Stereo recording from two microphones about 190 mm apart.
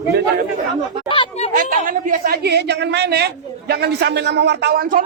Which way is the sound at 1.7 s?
45° right (ahead or behind).